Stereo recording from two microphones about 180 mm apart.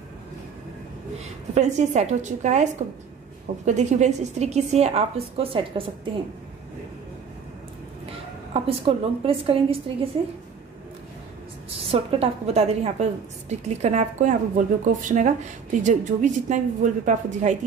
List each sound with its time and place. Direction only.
1.5 s a woman's voice: 40° right (ahead or behind)
8.5 s a woman's voice: 35° right (ahead or behind)
11.9 s a woman's voice: 30° right (ahead or behind)